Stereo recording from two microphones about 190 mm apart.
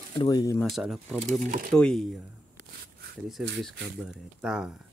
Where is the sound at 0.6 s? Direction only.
Centre (ahead or behind).